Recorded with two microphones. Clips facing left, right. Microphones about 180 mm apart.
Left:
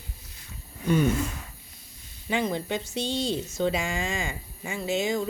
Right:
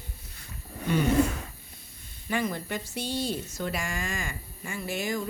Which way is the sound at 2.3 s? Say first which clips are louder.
Left 3 dB; 20° left (ahead or behind).